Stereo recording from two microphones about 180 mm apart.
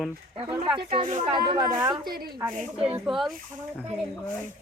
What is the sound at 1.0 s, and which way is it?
Speech, 45° right (ahead or behind).